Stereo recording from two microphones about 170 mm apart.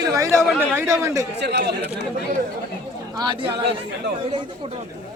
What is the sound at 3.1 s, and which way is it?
Speech, 25° right (ahead or behind).